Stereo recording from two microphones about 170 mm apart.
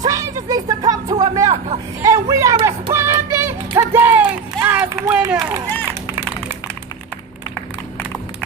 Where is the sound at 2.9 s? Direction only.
15° right (ahead or behind).